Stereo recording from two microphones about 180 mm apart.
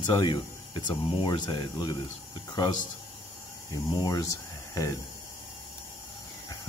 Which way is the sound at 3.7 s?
20° left (ahead or behind).